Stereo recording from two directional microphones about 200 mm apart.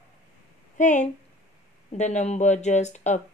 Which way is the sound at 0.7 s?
40° left (ahead or behind).